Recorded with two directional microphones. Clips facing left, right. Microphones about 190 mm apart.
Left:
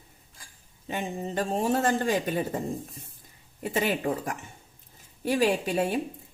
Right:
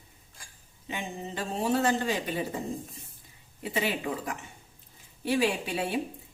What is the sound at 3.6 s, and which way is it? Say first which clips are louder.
Speech: left 4 dB; 50° left (ahead or behind).